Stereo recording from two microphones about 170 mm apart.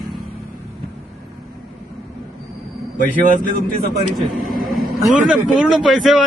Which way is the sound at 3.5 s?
50° left (ahead or behind).